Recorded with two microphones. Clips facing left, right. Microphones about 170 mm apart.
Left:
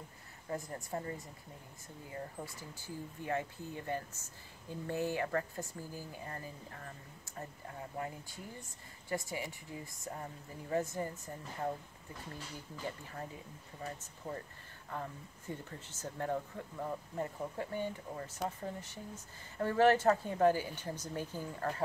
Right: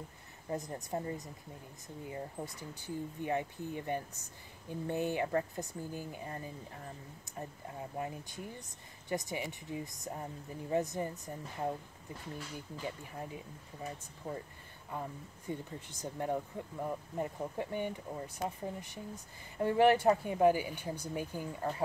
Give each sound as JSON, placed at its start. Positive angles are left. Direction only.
{"t": 0.5, "sound": "speech", "side_deg": -20}
{"t": 8.0, "sound": "speech", "side_deg": -20}
{"t": 12.8, "sound": "speech", "side_deg": -15}
{"t": 14.9, "sound": "speech", "side_deg": -15}